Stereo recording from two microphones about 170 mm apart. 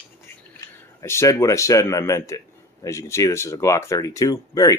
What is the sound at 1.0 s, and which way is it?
A man's voice, 15° left (ahead or behind).